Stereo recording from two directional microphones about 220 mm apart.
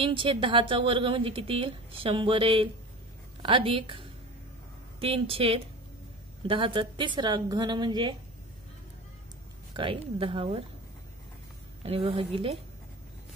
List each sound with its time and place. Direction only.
0.0 s a woman's voice: 25° right (ahead or behind)
5.0 s a woman's voice: 25° right (ahead or behind)
9.8 s a woman's voice: 25° right (ahead or behind)
11.8 s a woman's voice: 25° right (ahead or behind)